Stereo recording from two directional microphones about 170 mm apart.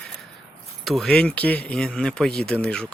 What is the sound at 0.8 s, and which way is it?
Speech, centre (ahead or behind).